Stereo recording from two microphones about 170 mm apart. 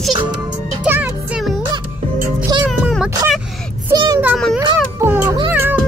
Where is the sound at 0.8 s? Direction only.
10° right (ahead or behind).